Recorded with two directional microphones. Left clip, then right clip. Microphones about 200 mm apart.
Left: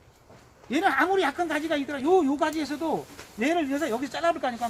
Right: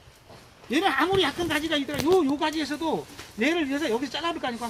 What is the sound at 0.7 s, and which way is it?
Speech, 15° left (ahead or behind).